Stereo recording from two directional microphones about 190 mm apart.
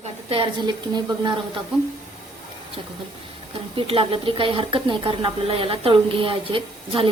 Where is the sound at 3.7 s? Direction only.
30° right (ahead or behind).